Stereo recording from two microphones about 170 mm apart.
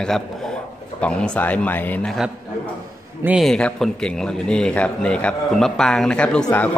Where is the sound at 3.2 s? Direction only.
10° right (ahead or behind).